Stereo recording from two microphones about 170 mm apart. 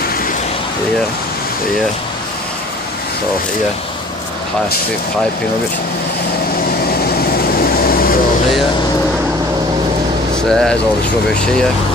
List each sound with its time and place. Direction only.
7.2 s vehicle: 60° left (ahead or behind)
10.3 s speech: 5° left (ahead or behind)